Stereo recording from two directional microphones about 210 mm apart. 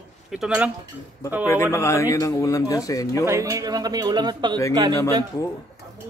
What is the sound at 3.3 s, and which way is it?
Speech, 15° right (ahead or behind).